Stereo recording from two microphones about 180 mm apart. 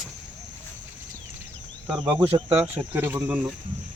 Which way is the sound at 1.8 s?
10° right (ahead or behind).